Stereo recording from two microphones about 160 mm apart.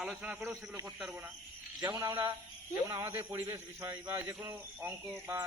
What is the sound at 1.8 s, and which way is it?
A man's voice, 25° right (ahead or behind).